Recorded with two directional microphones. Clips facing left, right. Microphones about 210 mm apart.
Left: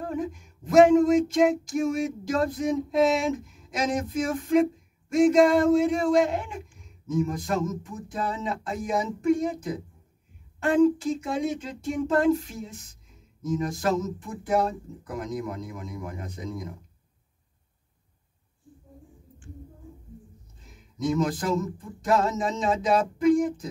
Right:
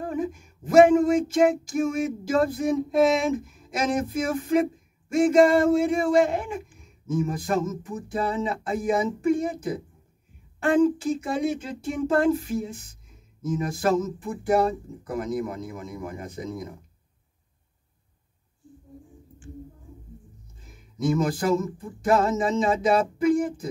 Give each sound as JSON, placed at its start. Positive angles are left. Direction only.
{"t": 0.1, "sound": "speech", "side_deg": -5}
{"t": 21.0, "sound": "speech", "side_deg": -5}